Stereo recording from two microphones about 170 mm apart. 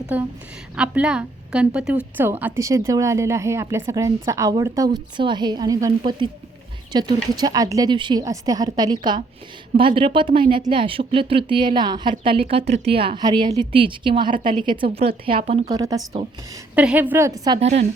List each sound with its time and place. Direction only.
0.1 s a woman's voice: 10° right (ahead or behind)
6.9 s a woman's voice: 25° right (ahead or behind)
15.7 s a woman's voice: 20° right (ahead or behind)
16.7 s a woman's voice: 10° right (ahead or behind)
17.6 s speech: 40° right (ahead or behind)